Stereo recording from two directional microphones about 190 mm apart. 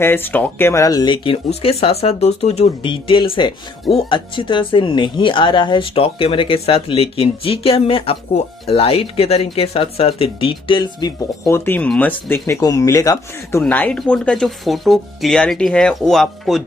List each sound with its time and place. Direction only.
0.0 s speech: 10° left (ahead or behind)